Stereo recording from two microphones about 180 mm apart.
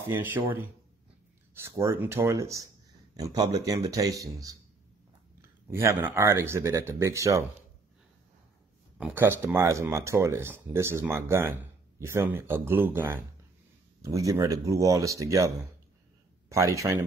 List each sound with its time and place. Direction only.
0.0 s a man's voice: 10° right (ahead or behind)
5.7 s speech: 15° right (ahead or behind)
8.9 s speech: 10° right (ahead or behind)